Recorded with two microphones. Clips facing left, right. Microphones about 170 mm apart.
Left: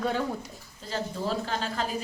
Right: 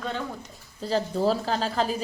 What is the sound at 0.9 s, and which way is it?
Speech, 35° right (ahead or behind).